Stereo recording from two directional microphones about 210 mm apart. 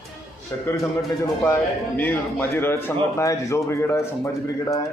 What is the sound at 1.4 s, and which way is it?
Speech, 10° left (ahead or behind).